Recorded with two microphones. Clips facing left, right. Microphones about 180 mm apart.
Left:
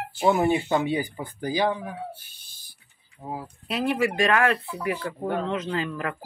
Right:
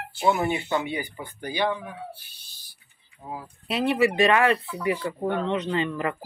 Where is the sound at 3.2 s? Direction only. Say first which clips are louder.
Left 2 dB; 25° left (ahead or behind).